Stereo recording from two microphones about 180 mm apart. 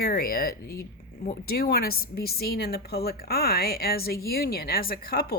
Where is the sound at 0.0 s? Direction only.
55° left (ahead or behind).